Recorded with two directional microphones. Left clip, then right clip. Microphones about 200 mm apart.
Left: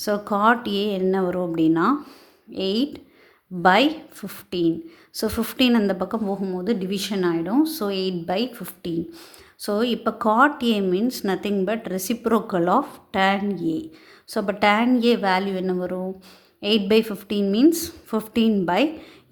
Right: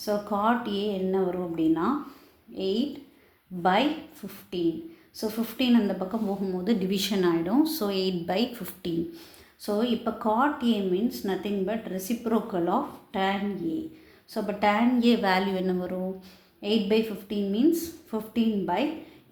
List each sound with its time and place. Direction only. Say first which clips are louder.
0.0 s a woman's voice: left 6 dB; 45° left (ahead or behind); by 8.9 s 25° left (ahead or behind)
9.1 s a woman's voice: left 4 dB; 45° left (ahead or behind); by 16.0 s 25° left (ahead or behind)
16.6 s speech: left 6 dB; 40° left (ahead or behind)